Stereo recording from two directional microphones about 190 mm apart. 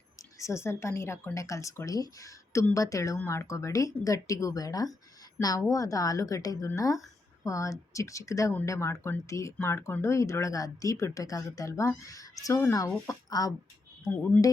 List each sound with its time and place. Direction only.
0.2 s speech: 15° left (ahead or behind)